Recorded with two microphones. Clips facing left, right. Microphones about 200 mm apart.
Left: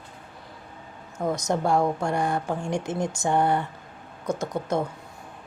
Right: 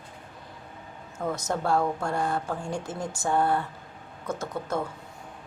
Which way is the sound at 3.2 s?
20° left (ahead or behind).